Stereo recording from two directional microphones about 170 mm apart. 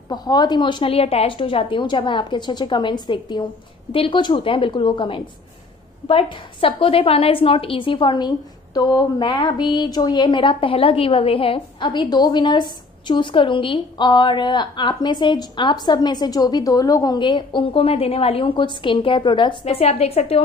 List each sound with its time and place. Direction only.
0.1 s a woman's voice: 25° left (ahead or behind)